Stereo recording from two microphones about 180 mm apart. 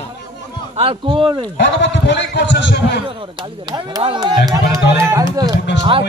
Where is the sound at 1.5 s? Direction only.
75° left (ahead or behind).